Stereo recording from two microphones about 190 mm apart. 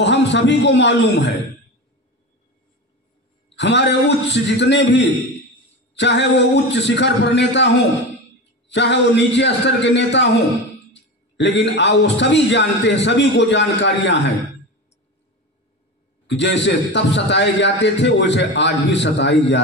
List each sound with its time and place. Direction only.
0.0 s a man's voice: 65° left (ahead or behind)
3.5 s a man's voice: 65° left (ahead or behind)
16.3 s a man's voice: 65° left (ahead or behind)